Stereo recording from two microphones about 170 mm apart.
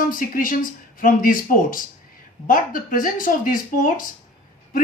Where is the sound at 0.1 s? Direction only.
55° left (ahead or behind).